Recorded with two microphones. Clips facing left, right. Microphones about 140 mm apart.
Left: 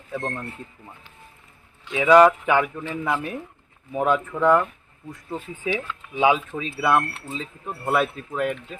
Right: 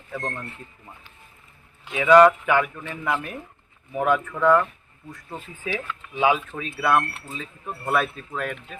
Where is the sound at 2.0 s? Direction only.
5° left (ahead or behind).